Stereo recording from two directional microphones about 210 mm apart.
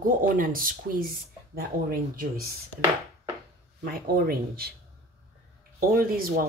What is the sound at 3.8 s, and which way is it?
Speech, 45° right (ahead or behind).